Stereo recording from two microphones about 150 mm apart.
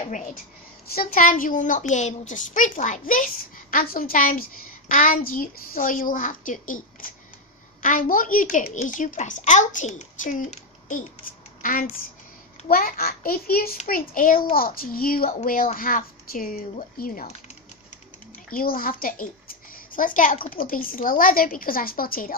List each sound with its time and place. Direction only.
0.1 s a woman's voice: 55° left (ahead or behind)
3.7 s a woman's voice: 75° left (ahead or behind)
12.6 s a child's voice: 75° left (ahead or behind)
13.8 s a child's voice: 70° left (ahead or behind)
18.5 s a woman's voice: 70° left (ahead or behind)